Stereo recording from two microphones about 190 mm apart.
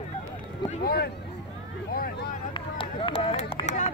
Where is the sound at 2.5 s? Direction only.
30° left (ahead or behind).